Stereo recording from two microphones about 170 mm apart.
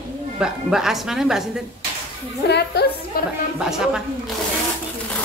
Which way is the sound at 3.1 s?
60° left (ahead or behind).